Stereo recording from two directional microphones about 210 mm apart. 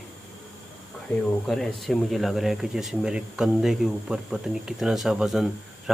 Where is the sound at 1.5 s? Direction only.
Centre (ahead or behind).